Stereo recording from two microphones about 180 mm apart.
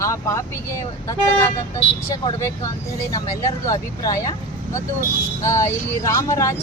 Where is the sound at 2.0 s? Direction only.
15° left (ahead or behind).